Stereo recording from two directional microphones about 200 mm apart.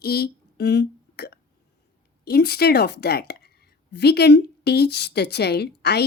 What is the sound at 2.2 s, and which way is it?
A woman's voice, 55° left (ahead or behind).